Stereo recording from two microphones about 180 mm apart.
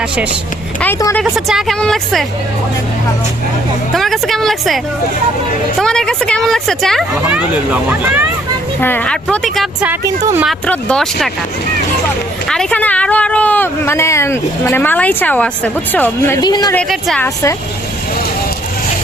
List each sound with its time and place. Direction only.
1.2 s speech: centre (ahead or behind)
3.9 s speech: centre (ahead or behind)
5.8 s speech: 5° left (ahead or behind)
7.3 s speech: 10° right (ahead or behind)
8.8 s speech: 10° left (ahead or behind)
10.7 s speech: 5° left (ahead or behind)
12.5 s speech: 5° left (ahead or behind)
16.4 s speech: 20° left (ahead or behind)
16.7 s speech: 5° left (ahead or behind)